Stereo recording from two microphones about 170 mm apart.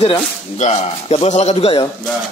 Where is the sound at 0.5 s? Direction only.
40° left (ahead or behind).